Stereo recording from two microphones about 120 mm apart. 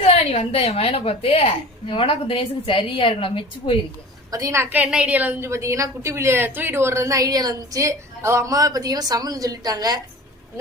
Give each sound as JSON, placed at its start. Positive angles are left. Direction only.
{"t": 0.1, "sound": "a woman's voice", "side_deg": 55}
{"t": 4.3, "sound": "a woman's voice", "side_deg": -25}